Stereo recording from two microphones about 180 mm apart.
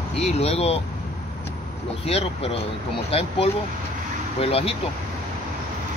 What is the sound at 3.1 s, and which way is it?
Speech, 35° left (ahead or behind).